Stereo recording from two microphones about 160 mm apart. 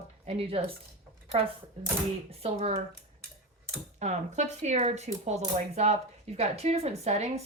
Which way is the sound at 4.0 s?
45° right (ahead or behind).